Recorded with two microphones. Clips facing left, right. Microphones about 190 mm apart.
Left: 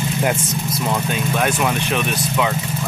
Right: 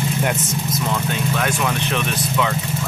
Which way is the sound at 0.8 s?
20° left (ahead or behind).